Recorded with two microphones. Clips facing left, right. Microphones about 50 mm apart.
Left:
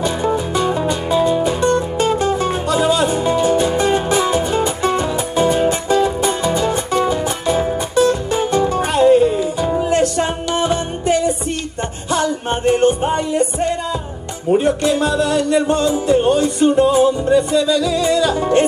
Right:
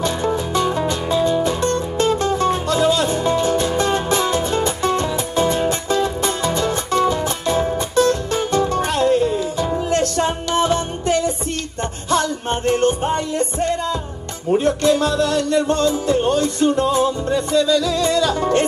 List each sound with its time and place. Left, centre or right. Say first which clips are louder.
0.0 s music: left 2 dB; centre